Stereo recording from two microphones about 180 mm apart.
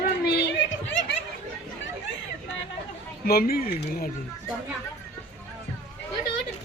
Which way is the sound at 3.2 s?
55° left (ahead or behind).